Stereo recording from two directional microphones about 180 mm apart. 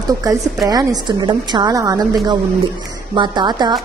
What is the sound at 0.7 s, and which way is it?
A woman's voice, 25° right (ahead or behind).